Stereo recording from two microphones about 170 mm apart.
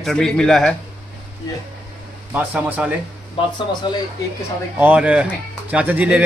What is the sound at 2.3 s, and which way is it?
Speech, 10° right (ahead or behind).